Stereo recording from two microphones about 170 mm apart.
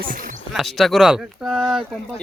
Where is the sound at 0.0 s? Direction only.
55° right (ahead or behind).